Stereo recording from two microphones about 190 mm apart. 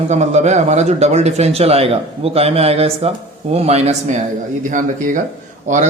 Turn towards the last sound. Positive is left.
turn(degrees=-40)  # may be behind; listen again after turning